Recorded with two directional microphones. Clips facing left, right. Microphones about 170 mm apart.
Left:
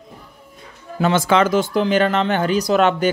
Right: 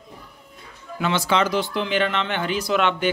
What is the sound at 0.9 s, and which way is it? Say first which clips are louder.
Speech: left 5 dB; 45° left (ahead or behind).